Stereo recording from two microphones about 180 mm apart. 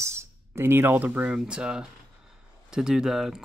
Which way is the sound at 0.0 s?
15° right (ahead or behind).